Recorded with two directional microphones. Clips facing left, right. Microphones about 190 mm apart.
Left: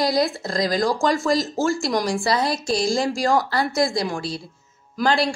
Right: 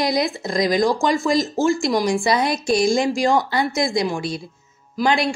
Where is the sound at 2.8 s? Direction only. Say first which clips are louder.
Right 3 dB; 20° right (ahead or behind).